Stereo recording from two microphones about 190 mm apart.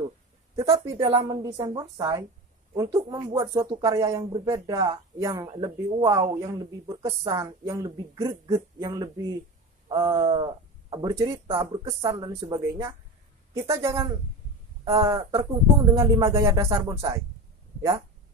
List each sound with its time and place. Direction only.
1.0 s speech: 25° right (ahead or behind)
12.1 s speech: 15° right (ahead or behind)
15.0 s speech: 15° right (ahead or behind)